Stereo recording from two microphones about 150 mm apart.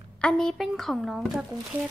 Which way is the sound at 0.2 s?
5° left (ahead or behind).